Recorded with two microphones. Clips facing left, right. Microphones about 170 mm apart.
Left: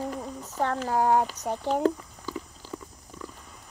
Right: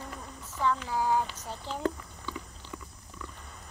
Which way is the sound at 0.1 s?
40° left (ahead or behind).